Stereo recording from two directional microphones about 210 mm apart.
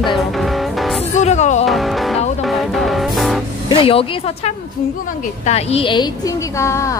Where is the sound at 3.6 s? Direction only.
25° left (ahead or behind).